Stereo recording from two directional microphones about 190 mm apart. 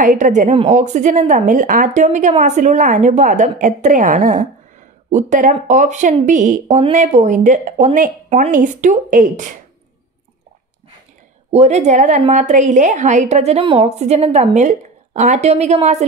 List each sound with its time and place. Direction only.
0.0 s a woman's voice: 40° right (ahead or behind)
11.5 s a woman's voice: 35° right (ahead or behind)